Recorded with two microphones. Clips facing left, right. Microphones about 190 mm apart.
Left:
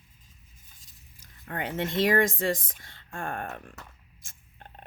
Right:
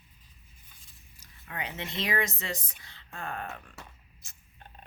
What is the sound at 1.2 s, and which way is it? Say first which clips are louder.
Speech: left 5 dB; 50° left (ahead or behind).